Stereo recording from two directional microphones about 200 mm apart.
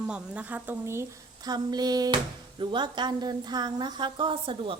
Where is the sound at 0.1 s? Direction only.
5° right (ahead or behind).